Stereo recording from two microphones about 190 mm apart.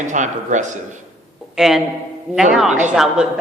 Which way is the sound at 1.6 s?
Centre (ahead or behind).